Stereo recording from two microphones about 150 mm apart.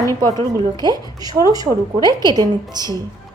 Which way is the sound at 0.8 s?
25° right (ahead or behind).